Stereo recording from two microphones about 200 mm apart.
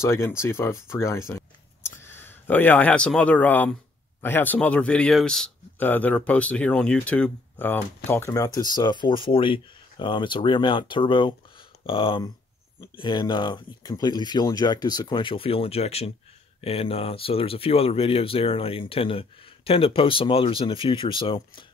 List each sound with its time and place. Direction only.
0.0 s speech: 15° left (ahead or behind)